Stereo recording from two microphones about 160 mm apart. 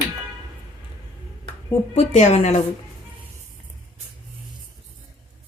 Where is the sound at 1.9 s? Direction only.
45° left (ahead or behind).